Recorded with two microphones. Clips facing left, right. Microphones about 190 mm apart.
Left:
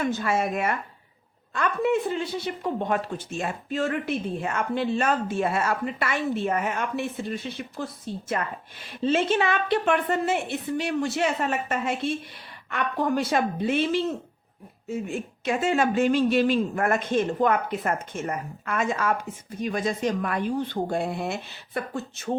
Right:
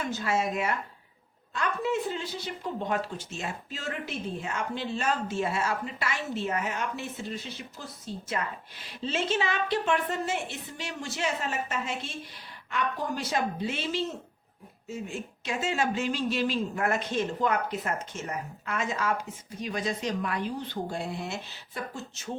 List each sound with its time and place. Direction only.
0.0 s speech: 55° left (ahead or behind)